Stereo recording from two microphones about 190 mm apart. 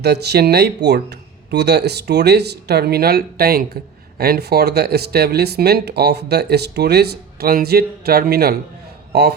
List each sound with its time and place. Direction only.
0.0 s speech: 60° right (ahead or behind)